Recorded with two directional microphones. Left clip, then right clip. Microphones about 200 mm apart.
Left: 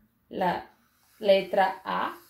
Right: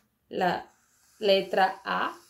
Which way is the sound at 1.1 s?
30° right (ahead or behind).